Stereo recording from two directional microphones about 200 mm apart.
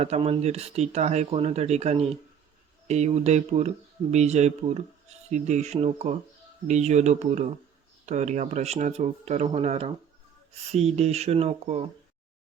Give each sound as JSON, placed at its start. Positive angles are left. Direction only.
{"t": 0.0, "sound": "speech", "side_deg": -30}